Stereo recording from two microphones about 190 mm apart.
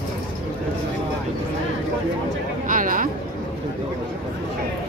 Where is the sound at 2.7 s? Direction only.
45° right (ahead or behind).